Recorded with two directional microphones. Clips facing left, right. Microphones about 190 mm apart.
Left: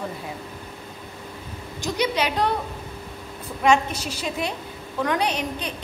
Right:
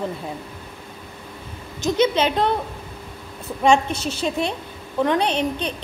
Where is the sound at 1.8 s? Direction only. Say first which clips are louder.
Right 5 dB; 25° right (ahead or behind).